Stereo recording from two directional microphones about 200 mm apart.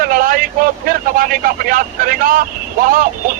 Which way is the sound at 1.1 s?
45° right (ahead or behind).